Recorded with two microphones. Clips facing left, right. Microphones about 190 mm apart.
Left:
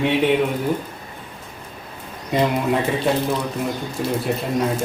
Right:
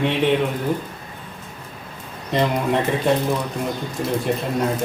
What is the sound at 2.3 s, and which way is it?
Speech, 5° left (ahead or behind).